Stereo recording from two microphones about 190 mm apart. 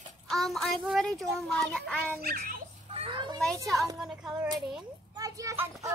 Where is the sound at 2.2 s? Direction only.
50° right (ahead or behind).